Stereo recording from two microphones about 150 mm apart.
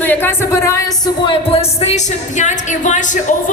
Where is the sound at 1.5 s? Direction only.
45° left (ahead or behind).